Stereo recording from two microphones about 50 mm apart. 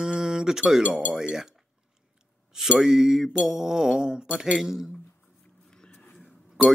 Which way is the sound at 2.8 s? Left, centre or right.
Centre.